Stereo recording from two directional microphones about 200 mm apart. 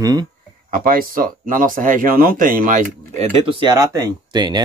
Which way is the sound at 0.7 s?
45° right (ahead or behind).